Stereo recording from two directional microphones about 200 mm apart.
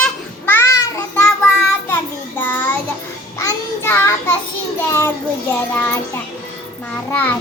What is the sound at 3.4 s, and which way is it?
Child singing, 10° left (ahead or behind).